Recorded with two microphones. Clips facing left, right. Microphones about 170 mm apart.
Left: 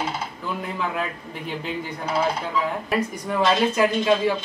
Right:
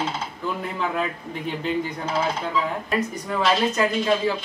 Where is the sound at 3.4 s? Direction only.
15° left (ahead or behind).